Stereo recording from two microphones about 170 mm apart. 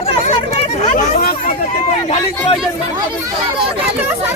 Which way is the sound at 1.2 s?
60° left (ahead or behind).